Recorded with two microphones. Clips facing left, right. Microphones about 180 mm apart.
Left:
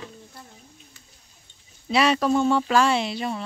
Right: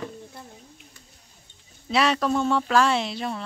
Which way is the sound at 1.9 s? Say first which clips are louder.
Left 2 dB; centre (ahead or behind).